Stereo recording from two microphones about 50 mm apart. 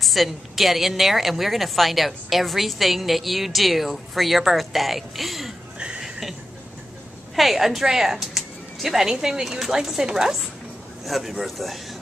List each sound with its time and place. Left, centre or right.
0.0 s a woman's voice: centre
5.8 s a sound: centre
7.3 s a woman's voice: centre